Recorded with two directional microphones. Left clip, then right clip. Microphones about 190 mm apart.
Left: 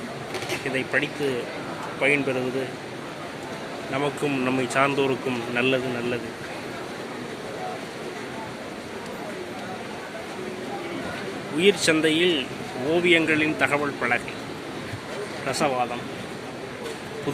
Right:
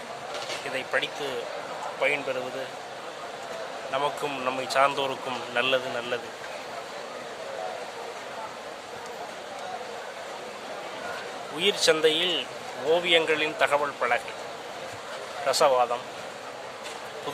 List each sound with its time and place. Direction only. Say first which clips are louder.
0.8 s speech: left 3 dB; 5° right (ahead or behind)
3.9 s speech: left 2 dB; 5° right (ahead or behind)
11.6 s speech: left 2 dB; 15° right (ahead or behind)
15.4 s speech: right 3 dB; 15° right (ahead or behind)